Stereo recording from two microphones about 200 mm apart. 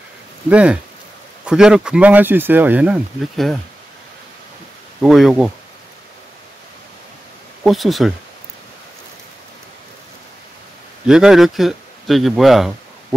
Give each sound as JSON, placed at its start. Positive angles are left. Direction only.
{"t": 0.5, "sound": "speech", "side_deg": -5}
{"t": 5.0, "sound": "speech", "side_deg": 0}
{"t": 7.6, "sound": "speech", "side_deg": 0}
{"t": 11.1, "sound": "speech", "side_deg": -5}